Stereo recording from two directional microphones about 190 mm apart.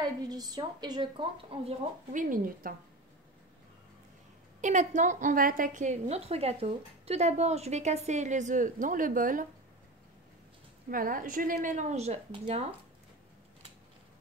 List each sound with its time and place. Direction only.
0.0 s a woman's voice: 20° right (ahead or behind); by 2.7 s 45° right (ahead or behind)
4.6 s a woman's voice: 40° right (ahead or behind)
10.9 s a woman's voice: 45° right (ahead or behind)